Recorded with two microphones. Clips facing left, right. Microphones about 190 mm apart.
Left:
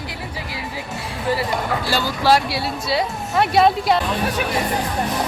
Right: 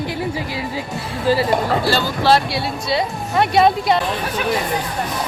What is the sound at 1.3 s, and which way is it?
Speech, 30° right (ahead or behind).